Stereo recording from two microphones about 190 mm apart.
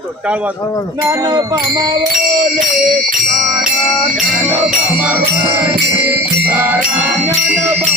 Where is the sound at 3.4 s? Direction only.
Centre (ahead or behind).